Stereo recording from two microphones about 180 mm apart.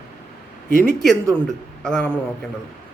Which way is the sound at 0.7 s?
50° left (ahead or behind).